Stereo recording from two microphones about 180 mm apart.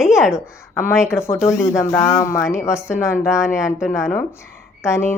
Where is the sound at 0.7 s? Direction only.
15° left (ahead or behind).